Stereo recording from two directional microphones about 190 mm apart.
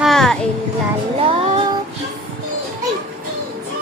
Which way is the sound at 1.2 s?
30° right (ahead or behind).